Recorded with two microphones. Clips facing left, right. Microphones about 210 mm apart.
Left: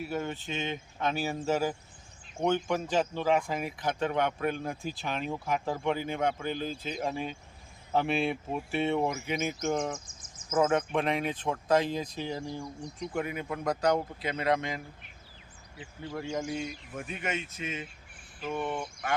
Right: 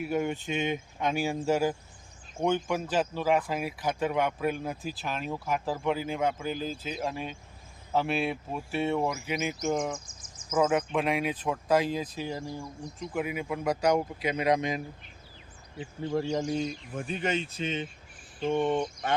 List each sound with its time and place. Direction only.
0.0 s speech: 15° right (ahead or behind)
10.9 s speech: 5° right (ahead or behind)
16.1 s speech: 35° right (ahead or behind)